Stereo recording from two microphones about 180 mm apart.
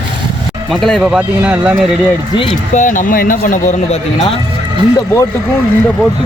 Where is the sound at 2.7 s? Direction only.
45° left (ahead or behind).